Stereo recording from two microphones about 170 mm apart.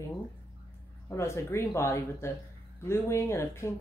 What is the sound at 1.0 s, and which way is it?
Speech, 15° left (ahead or behind).